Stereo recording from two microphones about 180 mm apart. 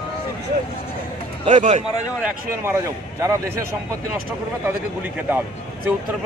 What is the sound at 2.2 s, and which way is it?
A man's voice, 15° right (ahead or behind).